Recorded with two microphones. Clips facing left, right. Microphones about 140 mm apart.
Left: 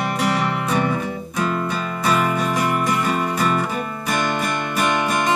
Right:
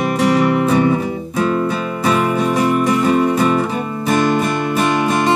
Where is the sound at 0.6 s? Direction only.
25° right (ahead or behind).